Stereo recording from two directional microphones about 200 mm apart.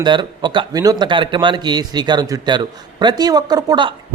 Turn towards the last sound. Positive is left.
turn(degrees=-20)  # may be behind; listen again after turning